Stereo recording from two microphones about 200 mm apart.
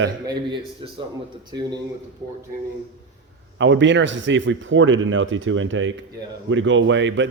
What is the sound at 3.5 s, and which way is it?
A man's voice, 65° right (ahead or behind).